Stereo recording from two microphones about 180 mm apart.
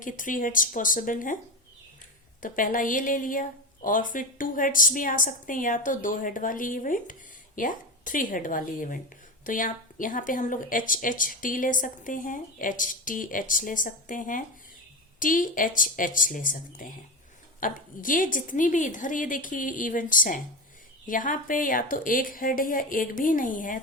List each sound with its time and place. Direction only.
0.0 s speech: 50° left (ahead or behind)
2.4 s speech: 50° left (ahead or behind)